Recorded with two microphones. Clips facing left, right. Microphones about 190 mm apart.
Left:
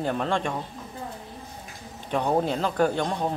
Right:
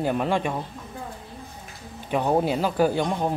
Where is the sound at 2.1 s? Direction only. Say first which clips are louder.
Right 2 dB; 5° right (ahead or behind).